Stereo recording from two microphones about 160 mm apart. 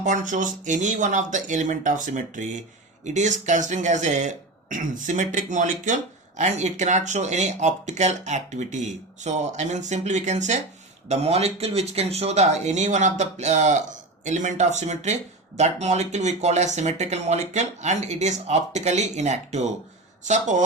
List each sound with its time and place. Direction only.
0.0 s speech: 50° right (ahead or behind)